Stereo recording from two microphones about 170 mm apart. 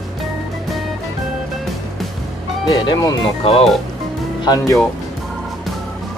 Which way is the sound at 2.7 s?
20° left (ahead or behind).